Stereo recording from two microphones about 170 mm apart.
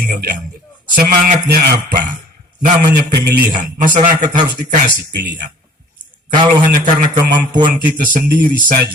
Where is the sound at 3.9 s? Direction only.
50° right (ahead or behind).